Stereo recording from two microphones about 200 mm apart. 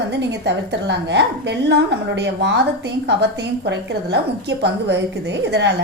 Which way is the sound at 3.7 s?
60° right (ahead or behind).